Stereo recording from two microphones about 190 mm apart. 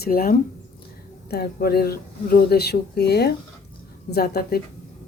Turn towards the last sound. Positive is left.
turn(degrees=55)  # may be behind; listen again after turning